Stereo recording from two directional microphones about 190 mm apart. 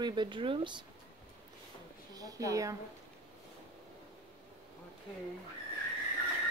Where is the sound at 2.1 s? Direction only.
20° right (ahead or behind).